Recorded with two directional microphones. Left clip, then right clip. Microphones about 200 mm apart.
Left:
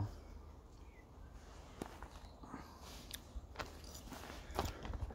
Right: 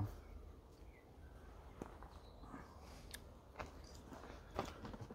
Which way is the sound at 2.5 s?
35° left (ahead or behind).